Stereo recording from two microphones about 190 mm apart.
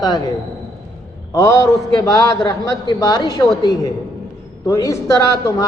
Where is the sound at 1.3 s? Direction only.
15° left (ahead or behind).